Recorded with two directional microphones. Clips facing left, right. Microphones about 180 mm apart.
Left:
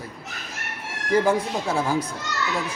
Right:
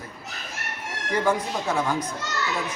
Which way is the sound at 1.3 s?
30° left (ahead or behind).